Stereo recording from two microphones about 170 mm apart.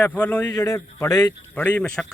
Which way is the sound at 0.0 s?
10° left (ahead or behind).